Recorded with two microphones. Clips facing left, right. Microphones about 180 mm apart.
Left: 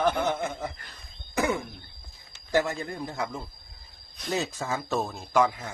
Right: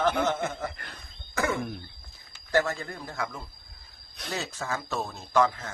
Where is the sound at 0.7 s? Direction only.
65° right (ahead or behind).